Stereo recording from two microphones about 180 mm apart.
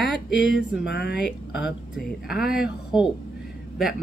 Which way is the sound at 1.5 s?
5° right (ahead or behind).